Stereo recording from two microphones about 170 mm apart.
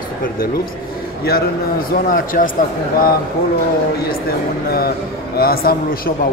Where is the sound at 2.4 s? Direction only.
55° left (ahead or behind).